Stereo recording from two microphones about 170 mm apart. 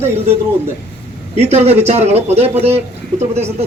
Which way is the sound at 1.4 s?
40° right (ahead or behind).